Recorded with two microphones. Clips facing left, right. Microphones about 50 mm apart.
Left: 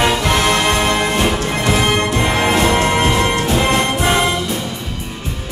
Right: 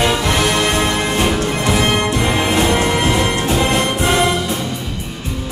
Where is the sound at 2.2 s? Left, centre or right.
Left.